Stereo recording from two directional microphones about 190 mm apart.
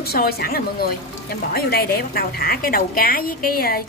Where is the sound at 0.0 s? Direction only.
55° left (ahead or behind).